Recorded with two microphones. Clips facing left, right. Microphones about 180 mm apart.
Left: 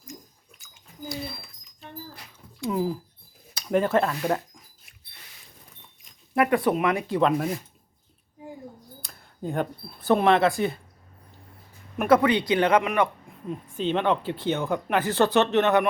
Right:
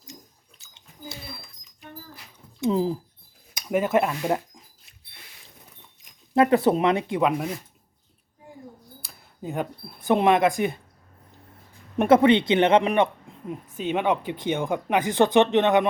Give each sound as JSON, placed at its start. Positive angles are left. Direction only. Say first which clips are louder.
{"t": 2.6, "sound": "speech", "louder": "right 3 dB", "side_deg": -25}
{"t": 3.5, "sound": "speech", "louder": "even", "side_deg": -10}
{"t": 6.3, "sound": "speech", "louder": "right 3 dB", "side_deg": -25}
{"t": 7.2, "sound": "speech", "louder": "left 1 dB", "side_deg": -10}
{"t": 9.0, "sound": "a sound", "louder": "left 2 dB", "side_deg": -5}
{"t": 10.1, "sound": "speech", "louder": "even", "side_deg": -15}
{"t": 11.9, "sound": "speech", "louder": "right 3 dB", "side_deg": -25}
{"t": 13.7, "sound": "speech", "louder": "even", "side_deg": -10}